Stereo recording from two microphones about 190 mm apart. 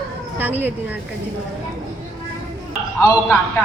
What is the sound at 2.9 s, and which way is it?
Speech, 15° left (ahead or behind).